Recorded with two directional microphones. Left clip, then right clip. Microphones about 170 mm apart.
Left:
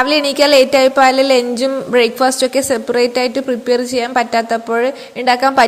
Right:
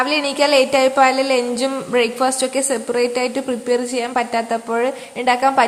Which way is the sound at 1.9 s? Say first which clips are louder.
Left 5 dB; 20° left (ahead or behind).